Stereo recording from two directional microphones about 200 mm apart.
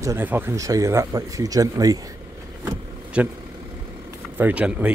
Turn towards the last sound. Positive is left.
turn(degrees=-5)  # may be behind; listen again after turning